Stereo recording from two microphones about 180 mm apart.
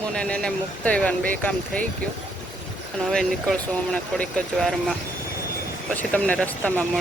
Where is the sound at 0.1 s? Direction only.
5° left (ahead or behind).